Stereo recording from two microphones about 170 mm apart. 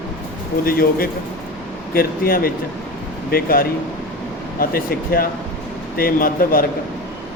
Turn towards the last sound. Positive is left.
turn(degrees=55)  # may be behind; listen again after turning